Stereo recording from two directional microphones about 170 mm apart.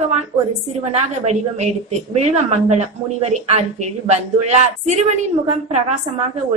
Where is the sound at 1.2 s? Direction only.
40° right (ahead or behind).